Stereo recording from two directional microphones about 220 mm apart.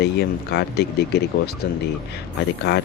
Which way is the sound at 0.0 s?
50° left (ahead or behind).